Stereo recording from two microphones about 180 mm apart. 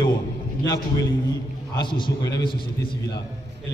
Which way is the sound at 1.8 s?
25° left (ahead or behind).